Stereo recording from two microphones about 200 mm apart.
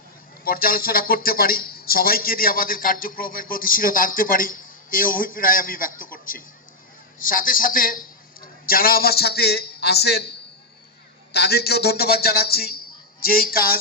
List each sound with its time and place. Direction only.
0.4 s speech: 45° left (ahead or behind)
11.3 s a man's voice: 55° left (ahead or behind)